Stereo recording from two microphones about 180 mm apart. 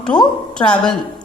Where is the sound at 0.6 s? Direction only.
25° left (ahead or behind).